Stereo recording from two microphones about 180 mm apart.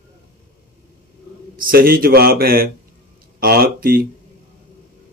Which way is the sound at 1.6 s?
55° right (ahead or behind).